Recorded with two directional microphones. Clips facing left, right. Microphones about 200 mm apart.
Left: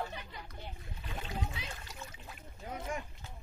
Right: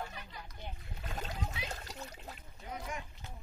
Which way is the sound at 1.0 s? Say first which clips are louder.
Left 1 dB; 40° right (ahead or behind).